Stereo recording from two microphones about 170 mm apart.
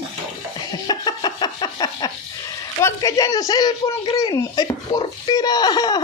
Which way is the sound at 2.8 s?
20° left (ahead or behind).